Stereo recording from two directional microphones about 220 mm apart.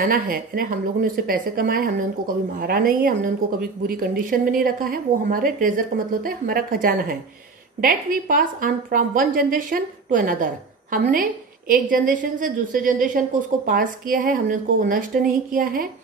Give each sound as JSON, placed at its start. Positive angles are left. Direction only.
{"t": 0.0, "sound": "a woman's voice", "side_deg": -40}